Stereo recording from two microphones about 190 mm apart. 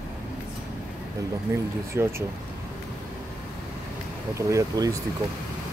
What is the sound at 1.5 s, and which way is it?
Speech, 15° right (ahead or behind).